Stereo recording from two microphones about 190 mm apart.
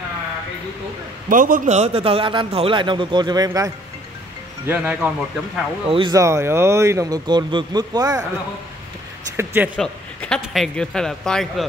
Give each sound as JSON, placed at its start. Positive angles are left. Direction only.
{"t": 1.3, "sound": "a man's voice", "side_deg": -45}
{"t": 5.9, "sound": "a man's voice", "side_deg": -25}
{"t": 9.4, "sound": "a man's voice", "side_deg": -10}
{"t": 9.8, "sound": "a man's voice", "side_deg": 5}